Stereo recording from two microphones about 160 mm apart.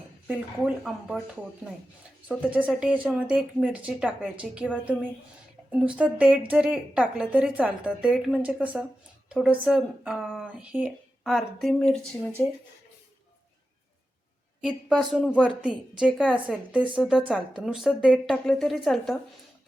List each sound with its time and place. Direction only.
0.3 s speech: 5° right (ahead or behind)
2.2 s a woman's voice: 10° right (ahead or behind)
14.6 s speech: 5° left (ahead or behind)